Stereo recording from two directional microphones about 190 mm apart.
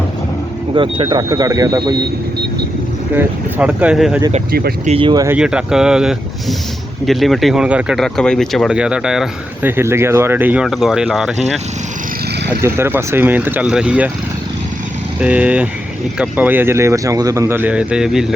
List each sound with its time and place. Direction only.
0.7 s speech: 25° right (ahead or behind)
3.2 s speech: 5° right (ahead or behind)
4.9 s speech: 25° right (ahead or behind)
5.4 s speech: 5° right (ahead or behind)
12.5 s speech: 10° right (ahead or behind)
15.2 s speech: 5° right (ahead or behind)